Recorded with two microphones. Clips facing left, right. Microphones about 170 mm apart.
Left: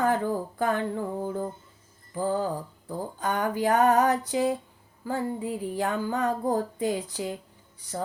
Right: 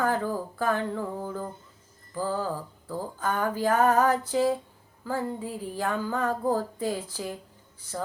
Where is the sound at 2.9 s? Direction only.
20° left (ahead or behind).